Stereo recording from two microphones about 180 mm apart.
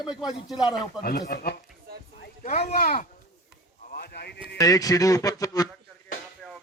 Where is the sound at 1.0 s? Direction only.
55° left (ahead or behind).